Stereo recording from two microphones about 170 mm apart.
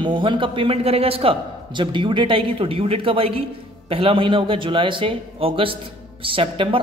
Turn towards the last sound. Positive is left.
turn(degrees=-30)  # may be behind; listen again after turning